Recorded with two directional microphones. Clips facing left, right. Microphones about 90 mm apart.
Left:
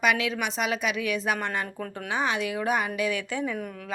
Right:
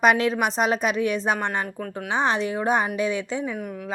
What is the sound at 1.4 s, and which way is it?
A woman's voice, 20° right (ahead or behind).